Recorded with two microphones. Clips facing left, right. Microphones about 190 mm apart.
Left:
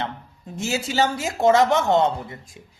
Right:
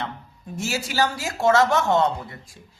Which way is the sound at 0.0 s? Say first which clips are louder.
Left 2 dB; 20° left (ahead or behind).